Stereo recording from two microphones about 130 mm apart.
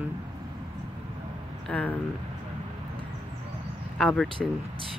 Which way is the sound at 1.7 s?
10° left (ahead or behind).